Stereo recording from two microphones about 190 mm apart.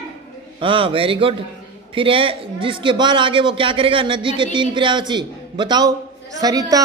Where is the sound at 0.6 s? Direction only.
25° right (ahead or behind).